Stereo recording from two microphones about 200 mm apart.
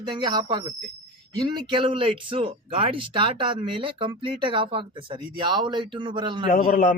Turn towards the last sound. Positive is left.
turn(degrees=40)  # may be behind; listen again after turning